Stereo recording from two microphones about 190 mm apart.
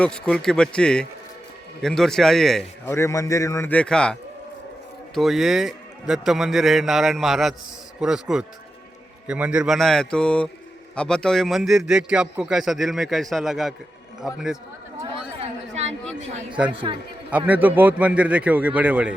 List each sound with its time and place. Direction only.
0.0 s a man's voice: 5° left (ahead or behind)
2.9 s a man's voice: 15° left (ahead or behind); by 14.4 s centre (ahead or behind)
15.4 s chatter: 35° right (ahead or behind)
17.3 s a man's voice: 10° right (ahead or behind)